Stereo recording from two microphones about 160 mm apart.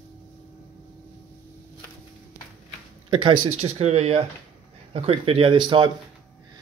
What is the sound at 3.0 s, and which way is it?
Speech, 35° right (ahead or behind).